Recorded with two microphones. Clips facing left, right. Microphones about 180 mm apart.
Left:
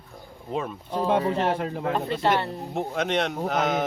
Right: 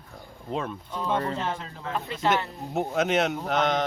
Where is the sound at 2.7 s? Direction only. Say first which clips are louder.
Right 3 dB; 5° right (ahead or behind).